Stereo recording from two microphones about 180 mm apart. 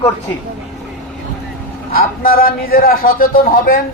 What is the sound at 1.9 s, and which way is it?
A man's voice, 55° left (ahead or behind).